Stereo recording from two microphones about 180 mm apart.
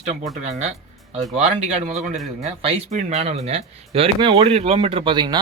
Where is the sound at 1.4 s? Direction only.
35° right (ahead or behind).